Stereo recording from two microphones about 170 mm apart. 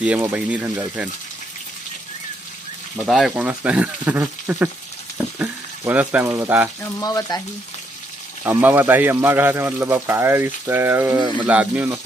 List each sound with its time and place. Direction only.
0.0 s speech: 10° right (ahead or behind)
3.1 s speech: centre (ahead or behind)
5.1 s frying: 10° right (ahead or behind)
6.8 s speech: 20° left (ahead or behind)
8.5 s speech: 10° right (ahead or behind)
11.1 s speech: 25° right (ahead or behind)
11.4 s speech: 10° right (ahead or behind)